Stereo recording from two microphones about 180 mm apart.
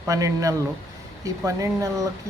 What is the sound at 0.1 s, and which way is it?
Speech, 20° right (ahead or behind).